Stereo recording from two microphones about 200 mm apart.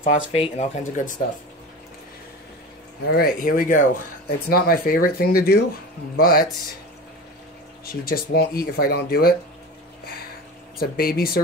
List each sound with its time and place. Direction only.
0.0 s speech: 30° left (ahead or behind)
3.1 s speech: 45° left (ahead or behind)
7.9 s speech: 50° left (ahead or behind)
10.8 s speech: 50° left (ahead or behind)